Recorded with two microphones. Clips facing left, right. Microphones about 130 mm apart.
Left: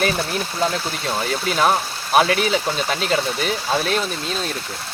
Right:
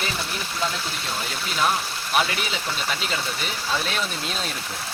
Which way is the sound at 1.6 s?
50° left (ahead or behind).